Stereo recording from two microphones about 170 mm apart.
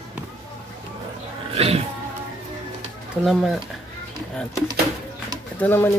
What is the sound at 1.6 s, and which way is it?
Music, 35° right (ahead or behind).